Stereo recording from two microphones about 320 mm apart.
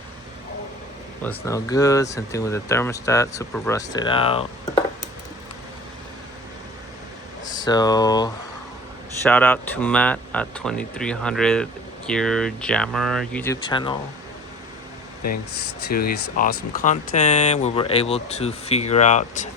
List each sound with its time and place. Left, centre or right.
1.2 s speech: centre
7.4 s speech: centre
15.9 s speech: left